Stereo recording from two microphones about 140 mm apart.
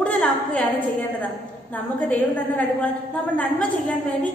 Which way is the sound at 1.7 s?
10° left (ahead or behind).